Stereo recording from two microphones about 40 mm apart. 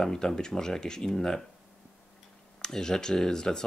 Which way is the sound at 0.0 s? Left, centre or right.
Centre.